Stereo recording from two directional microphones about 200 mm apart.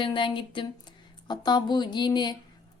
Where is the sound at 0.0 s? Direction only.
25° left (ahead or behind).